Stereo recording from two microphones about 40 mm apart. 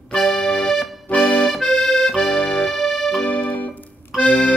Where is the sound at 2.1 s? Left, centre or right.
Left.